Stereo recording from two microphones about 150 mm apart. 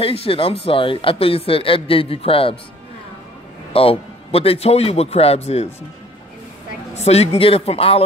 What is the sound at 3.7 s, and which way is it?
Speech, 40° left (ahead or behind).